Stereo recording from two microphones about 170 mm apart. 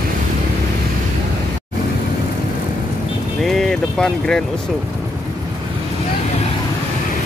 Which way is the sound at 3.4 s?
Centre (ahead or behind).